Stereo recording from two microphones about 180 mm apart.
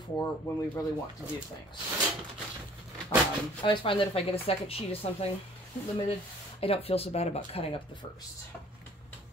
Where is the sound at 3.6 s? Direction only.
25° left (ahead or behind).